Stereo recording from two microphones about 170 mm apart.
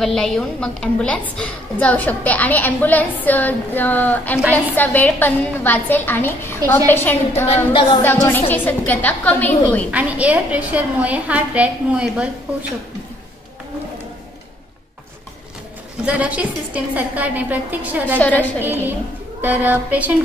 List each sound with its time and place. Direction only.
0.0 s a woman's voice: 5° left (ahead or behind)
7.4 s a sound: 30° left (ahead or behind)
8.0 s a woman's voice: 10° left (ahead or behind)
9.8 s a woman's voice: 10° right (ahead or behind)
16.1 s a woman's voice: 10° right (ahead or behind)
18.2 s a woman's voice: 10° left (ahead or behind)
18.6 s a woman's voice: 10° right (ahead or behind)